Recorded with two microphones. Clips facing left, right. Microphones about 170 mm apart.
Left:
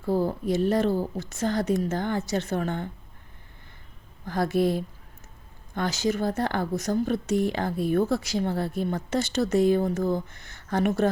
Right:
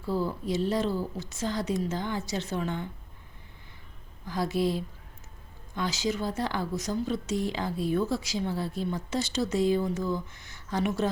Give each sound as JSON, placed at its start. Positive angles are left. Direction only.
{"t": 0.0, "sound": "a woman's voice", "side_deg": 50}
{"t": 4.3, "sound": "a woman's voice", "side_deg": 55}